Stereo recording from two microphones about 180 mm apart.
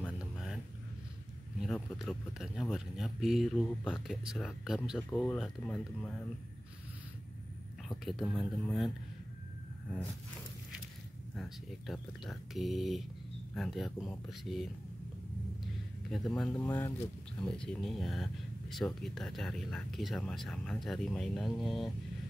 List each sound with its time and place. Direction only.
0.0 s vehicle: 5° right (ahead or behind)
1.6 s speech: centre (ahead or behind)
8.3 s speech: 5° left (ahead or behind)
11.3 s speech: centre (ahead or behind)
16.1 s speech: centre (ahead or behind)
16.5 s speech: 15° left (ahead or behind)